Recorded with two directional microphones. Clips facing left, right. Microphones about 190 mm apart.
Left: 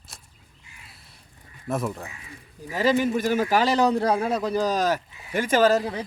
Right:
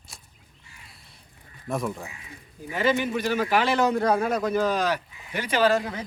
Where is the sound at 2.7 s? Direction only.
35° left (ahead or behind).